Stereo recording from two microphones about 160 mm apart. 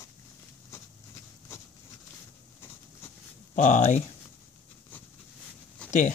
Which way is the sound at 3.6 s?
50° left (ahead or behind).